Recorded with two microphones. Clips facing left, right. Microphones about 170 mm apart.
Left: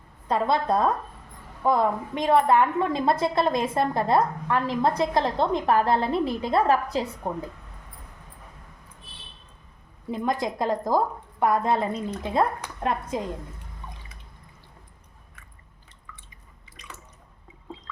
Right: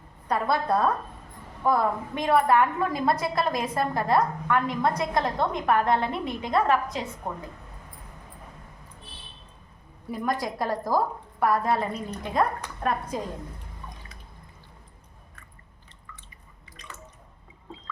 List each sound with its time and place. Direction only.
0.3 s a woman's voice: 20° left (ahead or behind)
10.1 s a woman's voice: 20° left (ahead or behind)